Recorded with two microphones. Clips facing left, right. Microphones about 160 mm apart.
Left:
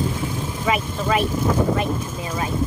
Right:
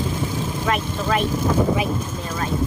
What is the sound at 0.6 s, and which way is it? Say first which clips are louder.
Speech: left 2 dB; 5° left (ahead or behind).